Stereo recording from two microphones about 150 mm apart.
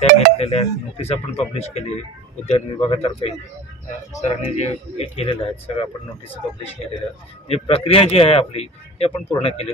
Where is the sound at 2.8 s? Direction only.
40° left (ahead or behind).